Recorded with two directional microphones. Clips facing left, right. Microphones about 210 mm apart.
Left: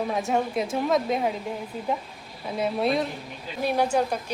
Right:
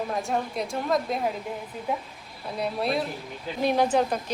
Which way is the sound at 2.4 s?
Centre (ahead or behind).